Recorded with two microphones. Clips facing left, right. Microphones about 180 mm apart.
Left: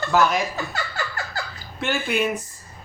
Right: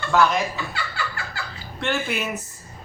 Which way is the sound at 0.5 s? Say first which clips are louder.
Left 2 dB; 45° left (ahead or behind).